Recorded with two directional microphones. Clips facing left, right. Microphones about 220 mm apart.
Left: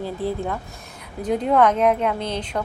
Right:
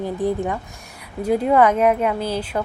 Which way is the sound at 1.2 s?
5° right (ahead or behind).